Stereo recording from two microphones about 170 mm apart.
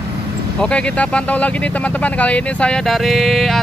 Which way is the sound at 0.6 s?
5° left (ahead or behind).